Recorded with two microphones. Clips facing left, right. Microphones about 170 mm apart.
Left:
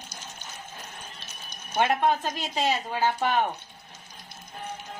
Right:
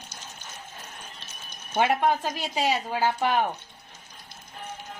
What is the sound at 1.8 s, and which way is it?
Speech, 10° right (ahead or behind).